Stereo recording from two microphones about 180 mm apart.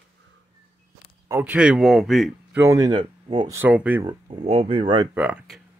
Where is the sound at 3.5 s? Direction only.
10° right (ahead or behind).